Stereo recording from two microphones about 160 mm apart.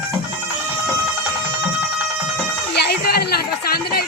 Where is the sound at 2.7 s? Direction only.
85° left.